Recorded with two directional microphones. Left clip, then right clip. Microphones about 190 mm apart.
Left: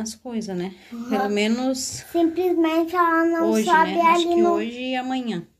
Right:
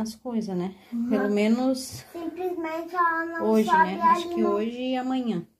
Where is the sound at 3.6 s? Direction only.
10° right (ahead or behind).